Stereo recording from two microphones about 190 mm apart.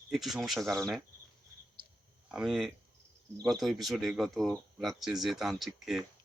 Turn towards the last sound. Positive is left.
turn(degrees=0)  # may be behind; listen again after turning